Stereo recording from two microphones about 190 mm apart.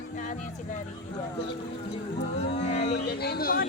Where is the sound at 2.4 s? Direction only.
35° left (ahead or behind).